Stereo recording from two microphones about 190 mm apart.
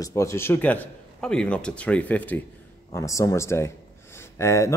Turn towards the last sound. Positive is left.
turn(degrees=15)  # may be behind; listen again after turning